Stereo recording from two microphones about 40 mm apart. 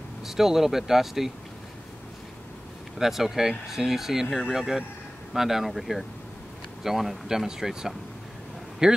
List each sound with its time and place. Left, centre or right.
0.2 s speech: centre
3.0 s a man's voice: centre